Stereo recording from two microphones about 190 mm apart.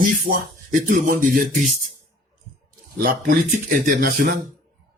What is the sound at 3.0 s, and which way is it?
Speech, 50° right (ahead or behind).